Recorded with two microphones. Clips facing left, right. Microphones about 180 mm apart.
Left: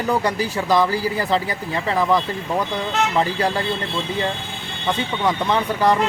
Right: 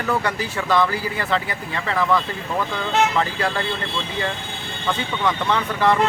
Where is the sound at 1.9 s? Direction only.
15° left (ahead or behind).